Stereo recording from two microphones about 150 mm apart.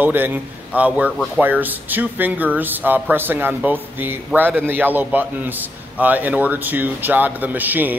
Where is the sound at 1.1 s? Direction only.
5° left (ahead or behind).